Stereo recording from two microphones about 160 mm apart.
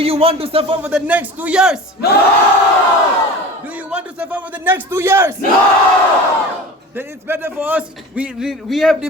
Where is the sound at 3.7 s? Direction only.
10° right (ahead or behind).